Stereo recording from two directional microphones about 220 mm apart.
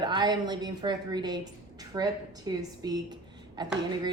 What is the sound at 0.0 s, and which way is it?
A woman's voice, 20° right (ahead or behind).